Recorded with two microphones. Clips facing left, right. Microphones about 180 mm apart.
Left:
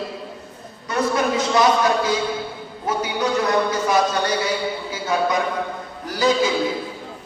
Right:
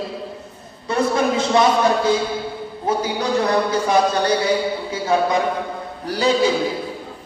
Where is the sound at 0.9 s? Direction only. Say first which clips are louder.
Right 2 dB; 30° right (ahead or behind).